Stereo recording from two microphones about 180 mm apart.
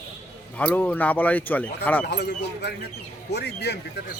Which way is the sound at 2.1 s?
70° left (ahead or behind).